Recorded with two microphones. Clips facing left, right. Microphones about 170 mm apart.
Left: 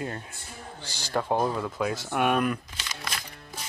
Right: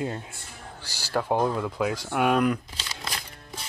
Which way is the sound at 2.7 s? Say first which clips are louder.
Right 1 dB; 25° right (ahead or behind).